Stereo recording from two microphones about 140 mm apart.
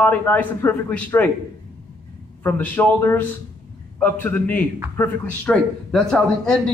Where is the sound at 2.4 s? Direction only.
15° left (ahead or behind).